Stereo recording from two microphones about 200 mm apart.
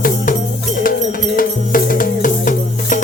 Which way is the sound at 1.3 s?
45° left (ahead or behind).